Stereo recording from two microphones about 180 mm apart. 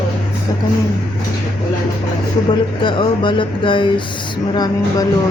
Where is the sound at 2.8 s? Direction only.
25° left (ahead or behind).